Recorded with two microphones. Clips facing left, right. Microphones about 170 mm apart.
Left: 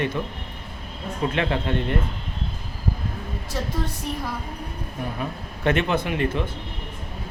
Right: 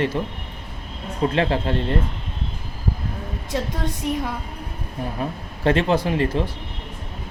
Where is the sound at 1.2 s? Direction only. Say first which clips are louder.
Right 4 dB; 30° right (ahead or behind).